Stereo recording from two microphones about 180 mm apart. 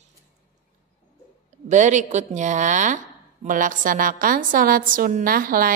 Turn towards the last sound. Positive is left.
turn(degrees=-55)  # may be behind; listen again after turning